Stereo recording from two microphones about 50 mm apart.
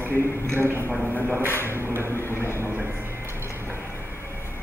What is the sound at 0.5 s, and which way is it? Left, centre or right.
Speech, right.